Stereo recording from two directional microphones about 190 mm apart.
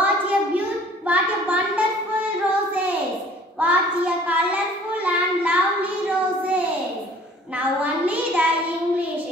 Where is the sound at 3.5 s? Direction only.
10° right (ahead or behind).